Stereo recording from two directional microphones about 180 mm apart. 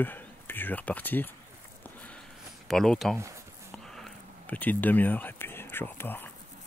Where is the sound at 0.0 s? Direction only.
10° left (ahead or behind).